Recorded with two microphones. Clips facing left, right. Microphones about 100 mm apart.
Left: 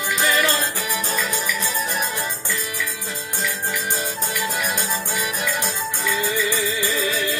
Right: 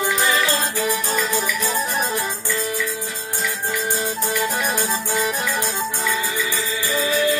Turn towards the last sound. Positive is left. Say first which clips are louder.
# right 4 dB
turn(degrees=-20)  # may be behind; listen again after turning